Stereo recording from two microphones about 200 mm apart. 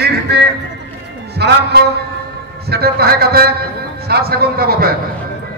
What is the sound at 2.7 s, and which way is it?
A man's voice, 50° right (ahead or behind).